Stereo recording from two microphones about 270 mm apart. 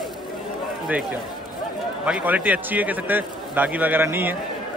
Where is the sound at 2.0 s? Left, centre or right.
Centre.